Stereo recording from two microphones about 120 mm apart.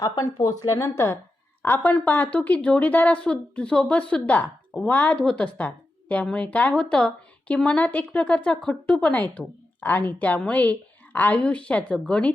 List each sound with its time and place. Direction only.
0.3 s speech: 30° left (ahead or behind); by 12.3 s 10° left (ahead or behind)